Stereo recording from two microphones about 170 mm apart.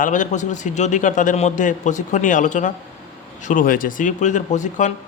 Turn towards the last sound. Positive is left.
turn(degrees=45)  # may be behind; listen again after turning